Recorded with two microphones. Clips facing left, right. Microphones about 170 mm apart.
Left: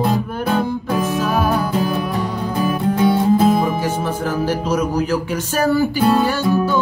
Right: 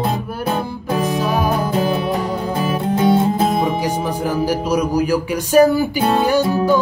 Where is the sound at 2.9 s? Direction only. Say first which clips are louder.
Even; 20° right (ahead or behind).